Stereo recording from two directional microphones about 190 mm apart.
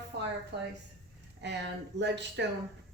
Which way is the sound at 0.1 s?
60° right (ahead or behind).